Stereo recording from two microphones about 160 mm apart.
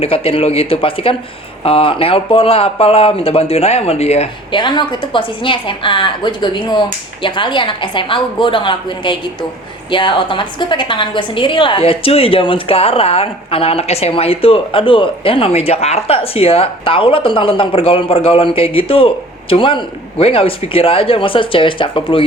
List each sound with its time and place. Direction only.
0.0 s a woman's voice: 35° left (ahead or behind)